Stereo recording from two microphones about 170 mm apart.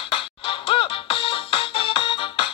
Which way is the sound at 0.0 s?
30° left (ahead or behind).